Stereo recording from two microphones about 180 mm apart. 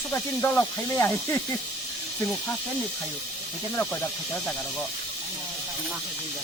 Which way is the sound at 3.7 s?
10° left (ahead or behind).